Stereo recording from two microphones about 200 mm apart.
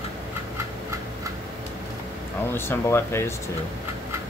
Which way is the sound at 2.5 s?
10° left (ahead or behind).